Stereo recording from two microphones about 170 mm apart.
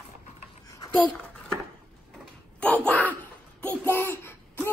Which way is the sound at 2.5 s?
10° left (ahead or behind).